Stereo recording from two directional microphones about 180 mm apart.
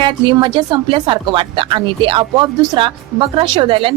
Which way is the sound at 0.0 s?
25° right (ahead or behind).